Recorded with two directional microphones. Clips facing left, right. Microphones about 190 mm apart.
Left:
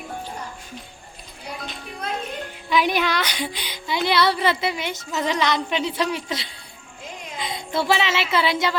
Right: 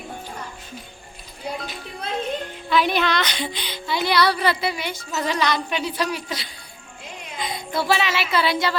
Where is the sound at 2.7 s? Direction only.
15° left (ahead or behind).